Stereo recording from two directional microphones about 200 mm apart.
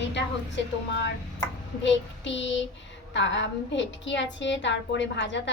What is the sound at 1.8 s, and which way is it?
A woman's voice, 65° left (ahead or behind).